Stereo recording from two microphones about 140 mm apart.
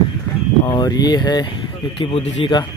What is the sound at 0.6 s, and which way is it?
Speech, 30° left (ahead or behind).